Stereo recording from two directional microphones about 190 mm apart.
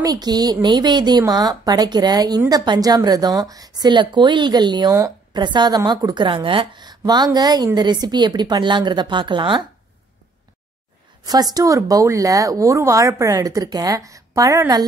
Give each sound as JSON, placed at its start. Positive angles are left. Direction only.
{"t": 0.0, "sound": "a woman's voice", "side_deg": -20}
{"t": 11.2, "sound": "speech", "side_deg": -20}